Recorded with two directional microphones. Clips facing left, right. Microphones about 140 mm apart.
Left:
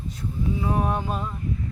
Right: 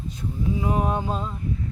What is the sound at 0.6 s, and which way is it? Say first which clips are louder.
Speech: right 1 dB; 20° right (ahead or behind).